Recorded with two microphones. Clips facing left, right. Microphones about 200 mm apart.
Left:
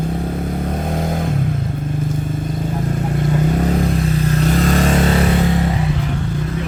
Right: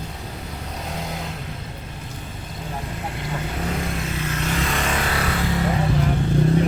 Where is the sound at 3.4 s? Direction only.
40° left (ahead or behind); by 5.4 s 25° left (ahead or behind).